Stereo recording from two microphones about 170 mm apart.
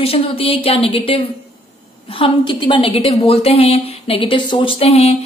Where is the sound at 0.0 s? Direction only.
35° left (ahead or behind).